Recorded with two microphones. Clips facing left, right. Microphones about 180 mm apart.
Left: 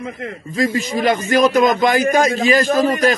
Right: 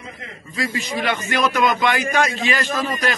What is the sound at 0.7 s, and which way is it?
A man's voice, 40° left (ahead or behind).